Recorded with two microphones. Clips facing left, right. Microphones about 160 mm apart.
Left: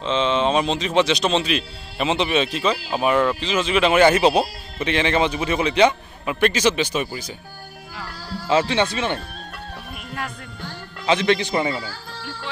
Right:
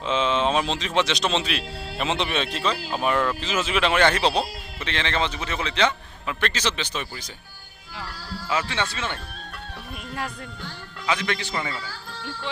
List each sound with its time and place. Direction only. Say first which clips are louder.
0.0 s a man's voice: left 3 dB; 5° right (ahead or behind); by 7.2 s 10° left (ahead or behind)
8.5 s a man's voice: left 8 dB; 25° left (ahead or behind)
11.1 s a man's voice: left 8 dB; 25° left (ahead or behind)